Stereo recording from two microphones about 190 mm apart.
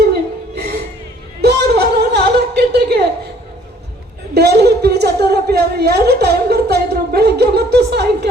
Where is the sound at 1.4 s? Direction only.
60° right (ahead or behind).